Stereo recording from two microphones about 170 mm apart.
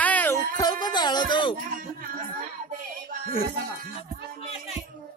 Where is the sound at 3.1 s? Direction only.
50° right (ahead or behind).